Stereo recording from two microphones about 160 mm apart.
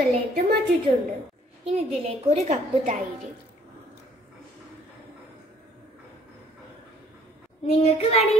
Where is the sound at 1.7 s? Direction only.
40° right (ahead or behind).